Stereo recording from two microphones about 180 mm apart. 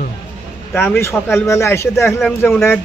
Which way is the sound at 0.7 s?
15° left (ahead or behind).